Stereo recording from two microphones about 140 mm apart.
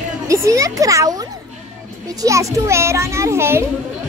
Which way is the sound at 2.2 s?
25° right (ahead or behind).